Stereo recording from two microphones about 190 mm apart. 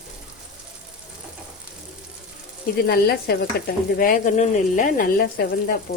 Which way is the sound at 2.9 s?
55° left (ahead or behind).